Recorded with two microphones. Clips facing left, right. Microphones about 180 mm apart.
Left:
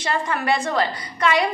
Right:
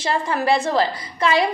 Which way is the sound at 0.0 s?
30° right (ahead or behind).